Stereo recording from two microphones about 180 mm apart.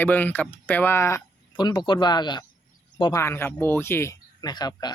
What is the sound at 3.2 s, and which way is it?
Speech, 15° left (ahead or behind).